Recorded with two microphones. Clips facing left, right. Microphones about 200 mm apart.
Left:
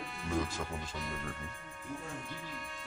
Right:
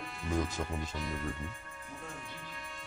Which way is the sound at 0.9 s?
Centre (ahead or behind).